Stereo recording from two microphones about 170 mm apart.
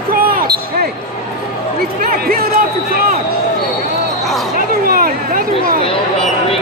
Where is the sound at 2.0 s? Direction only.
60° right (ahead or behind).